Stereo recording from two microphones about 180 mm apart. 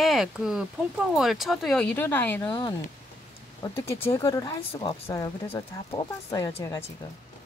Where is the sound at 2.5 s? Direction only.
25° left (ahead or behind).